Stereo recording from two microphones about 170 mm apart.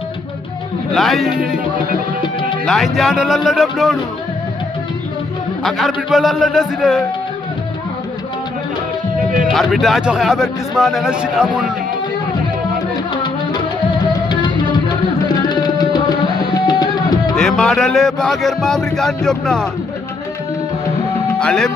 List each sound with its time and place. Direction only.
0.9 s speech: centre (ahead or behind)
2.6 s speech: centre (ahead or behind)
5.6 s speech: centre (ahead or behind)
9.5 s speech: centre (ahead or behind)
13.1 s music: 25° left (ahead or behind)
15.2 s tabla: 25° left (ahead or behind)
16.5 s music: 25° left (ahead or behind)
17.4 s speech: 5° left (ahead or behind)
21.3 s music: 5° left (ahead or behind)